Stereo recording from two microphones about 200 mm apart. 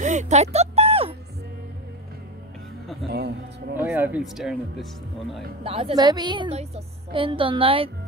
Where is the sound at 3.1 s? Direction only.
55° right (ahead or behind).